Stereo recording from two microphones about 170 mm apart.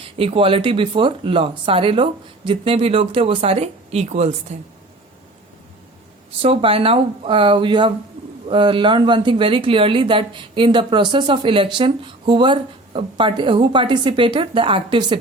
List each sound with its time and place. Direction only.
0.2 s speech: 35° right (ahead or behind)
6.4 s a woman's voice: 35° right (ahead or behind)